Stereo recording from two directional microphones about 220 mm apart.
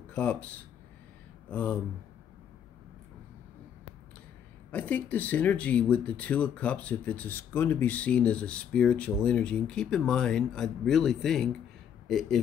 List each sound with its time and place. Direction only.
0.1 s speech: 5° left (ahead or behind)
4.6 s speech: 5° left (ahead or behind)